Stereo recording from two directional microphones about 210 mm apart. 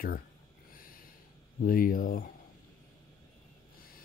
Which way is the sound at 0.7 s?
45° left (ahead or behind).